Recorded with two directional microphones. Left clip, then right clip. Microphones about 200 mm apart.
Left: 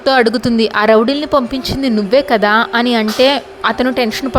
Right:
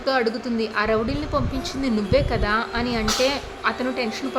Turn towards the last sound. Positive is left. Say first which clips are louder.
# left 10 dB
turn(degrees=40)  # may be behind; listen again after turning